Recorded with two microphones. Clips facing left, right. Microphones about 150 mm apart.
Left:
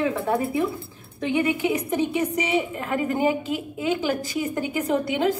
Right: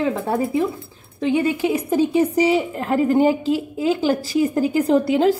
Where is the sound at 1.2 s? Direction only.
30° right (ahead or behind).